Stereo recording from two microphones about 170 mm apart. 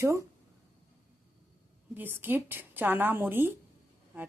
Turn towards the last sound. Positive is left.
turn(degrees=-10)  # may be behind; listen again after turning